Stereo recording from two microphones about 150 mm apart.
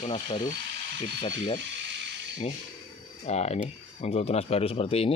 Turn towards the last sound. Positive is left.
turn(degrees=40)  # may be behind; listen again after turning